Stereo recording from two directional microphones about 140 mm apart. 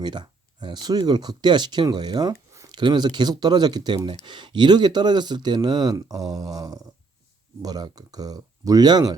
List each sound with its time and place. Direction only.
0.0 s speech: 30° right (ahead or behind)
2.5 s a sound: 20° right (ahead or behind)
2.8 s speech: 35° right (ahead or behind)